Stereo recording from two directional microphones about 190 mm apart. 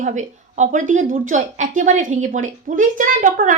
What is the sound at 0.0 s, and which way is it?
A woman's voice, 40° right (ahead or behind).